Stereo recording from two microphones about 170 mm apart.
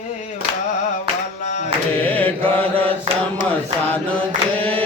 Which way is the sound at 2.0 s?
10° left (ahead or behind).